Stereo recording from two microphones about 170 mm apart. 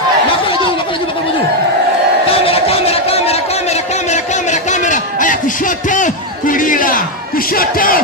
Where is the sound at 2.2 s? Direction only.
35° left (ahead or behind).